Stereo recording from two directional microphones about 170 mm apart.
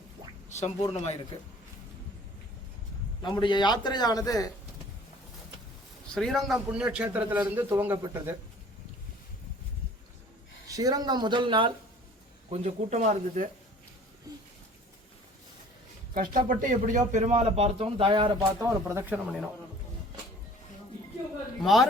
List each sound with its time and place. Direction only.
0.5 s speech: 35° left (ahead or behind)
3.2 s a man's voice: 25° left (ahead or behind)
6.1 s a man's voice: centre (ahead or behind)
10.7 s speech: 20° right (ahead or behind)
12.5 s speech: 40° right (ahead or behind)
14.3 s a sound: 20° right (ahead or behind)
16.1 s speech: 55° right (ahead or behind); by 18.3 s 30° right (ahead or behind)
18.6 s a man's voice: 15° right (ahead or behind)
21.6 s a man's voice: centre (ahead or behind)